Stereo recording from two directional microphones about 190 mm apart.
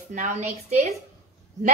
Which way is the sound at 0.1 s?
40° right (ahead or behind).